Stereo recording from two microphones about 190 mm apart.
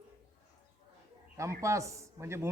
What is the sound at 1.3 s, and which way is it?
A man's voice, 15° right (ahead or behind).